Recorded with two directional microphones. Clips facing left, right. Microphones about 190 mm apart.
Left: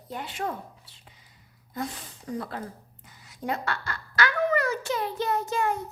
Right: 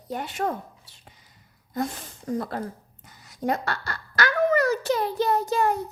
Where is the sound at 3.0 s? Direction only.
40° right (ahead or behind).